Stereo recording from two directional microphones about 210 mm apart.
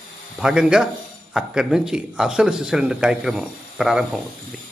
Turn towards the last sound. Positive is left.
turn(degrees=0)  # may be behind; listen again after turning